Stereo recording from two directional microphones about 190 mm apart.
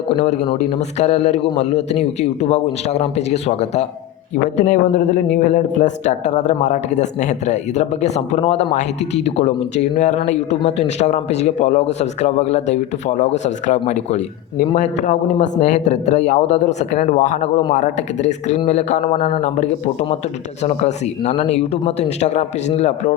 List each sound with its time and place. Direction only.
0.7 s speech: 35° left (ahead or behind)